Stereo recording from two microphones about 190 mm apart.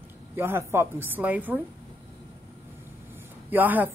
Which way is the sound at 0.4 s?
15° right (ahead or behind).